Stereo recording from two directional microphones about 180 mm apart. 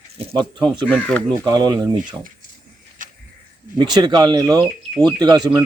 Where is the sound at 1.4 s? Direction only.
25° right (ahead or behind).